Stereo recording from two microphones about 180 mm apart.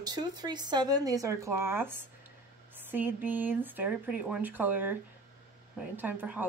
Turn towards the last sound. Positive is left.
turn(degrees=-10)  # may be behind; listen again after turning